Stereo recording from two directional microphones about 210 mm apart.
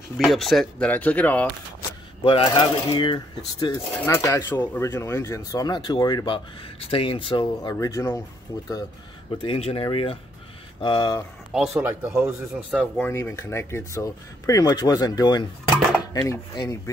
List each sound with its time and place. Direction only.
0.2 s speech: centre (ahead or behind)
1.8 s speech: 20° left (ahead or behind)
9.4 s speech: 25° left (ahead or behind)
11.5 s speech: 5° right (ahead or behind)
12.9 s speech: 10° left (ahead or behind)